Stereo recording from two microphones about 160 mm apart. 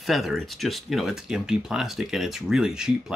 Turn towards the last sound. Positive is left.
turn(degrees=-5)  # may be behind; listen again after turning